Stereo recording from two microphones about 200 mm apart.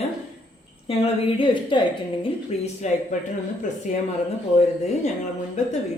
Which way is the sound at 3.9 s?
35° left (ahead or behind).